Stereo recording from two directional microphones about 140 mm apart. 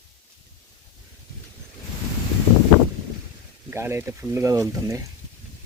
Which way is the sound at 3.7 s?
15° right (ahead or behind).